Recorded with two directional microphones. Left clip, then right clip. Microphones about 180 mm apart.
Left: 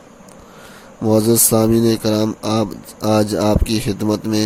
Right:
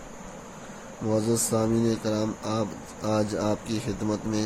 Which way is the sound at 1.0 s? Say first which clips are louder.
Left 11 dB; 50° left (ahead or behind).